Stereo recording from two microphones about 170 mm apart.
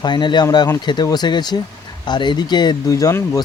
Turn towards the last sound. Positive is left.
turn(degrees=20)  # may be behind; listen again after turning